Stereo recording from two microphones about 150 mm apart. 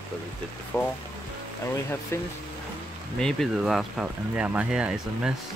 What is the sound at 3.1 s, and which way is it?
Speech, centre (ahead or behind).